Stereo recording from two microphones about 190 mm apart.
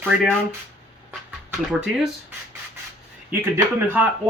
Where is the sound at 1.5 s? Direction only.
5° right (ahead or behind).